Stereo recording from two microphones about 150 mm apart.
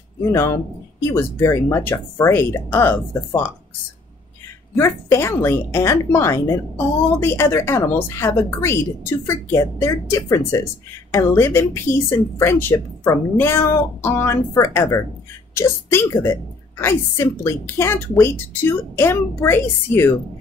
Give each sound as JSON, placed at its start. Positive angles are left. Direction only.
{"t": 0.2, "sound": "speech", "side_deg": 20}
{"t": 4.7, "sound": "speech", "side_deg": 15}